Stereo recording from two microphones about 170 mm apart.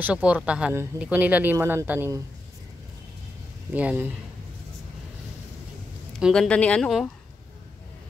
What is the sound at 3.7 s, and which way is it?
Speech, 10° right (ahead or behind).